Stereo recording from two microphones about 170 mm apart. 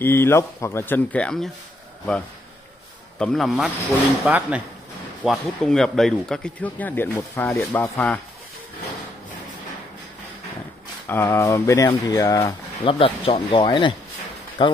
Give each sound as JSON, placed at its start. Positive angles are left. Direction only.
{"t": 0.0, "sound": "speech", "side_deg": 15}
{"t": 3.2, "sound": "speech", "side_deg": 0}
{"t": 5.2, "sound": "speech", "side_deg": 0}
{"t": 11.1, "sound": "speech", "side_deg": 15}
{"t": 13.0, "sound": "speech", "side_deg": 30}